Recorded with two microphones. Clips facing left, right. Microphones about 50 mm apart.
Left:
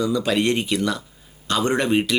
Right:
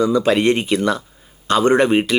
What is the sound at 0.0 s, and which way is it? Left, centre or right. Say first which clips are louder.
Speech: right 5 dB; right.